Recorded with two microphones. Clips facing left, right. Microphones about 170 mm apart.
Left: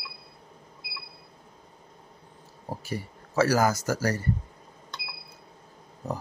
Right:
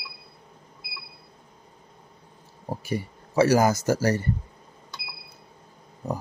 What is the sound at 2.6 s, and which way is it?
Speech, 15° right (ahead or behind).